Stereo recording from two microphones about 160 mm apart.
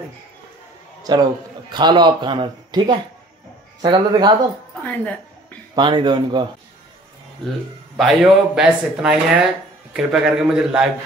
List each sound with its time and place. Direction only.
1.1 s speech: 25° right (ahead or behind)
4.8 s a sound: 10° left (ahead or behind)
5.8 s speech: 30° right (ahead or behind)
8.0 s speech: centre (ahead or behind)